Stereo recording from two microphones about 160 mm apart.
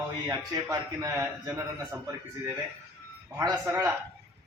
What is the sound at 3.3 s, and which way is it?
Speech, 15° right (ahead or behind).